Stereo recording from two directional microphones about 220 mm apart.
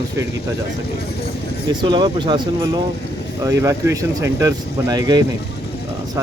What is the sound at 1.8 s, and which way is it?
Speech, 20° right (ahead or behind).